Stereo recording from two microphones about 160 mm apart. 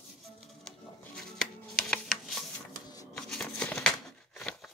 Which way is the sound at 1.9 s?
5° left (ahead or behind).